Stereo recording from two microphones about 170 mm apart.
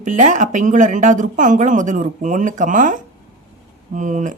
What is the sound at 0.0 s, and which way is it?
A woman's voice, 45° right (ahead or behind).